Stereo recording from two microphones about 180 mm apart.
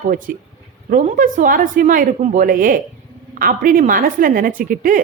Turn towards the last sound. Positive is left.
turn(degrees=-50)  # may be behind; listen again after turning